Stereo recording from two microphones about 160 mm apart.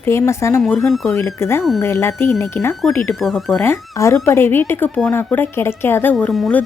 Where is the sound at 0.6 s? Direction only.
Centre (ahead or behind).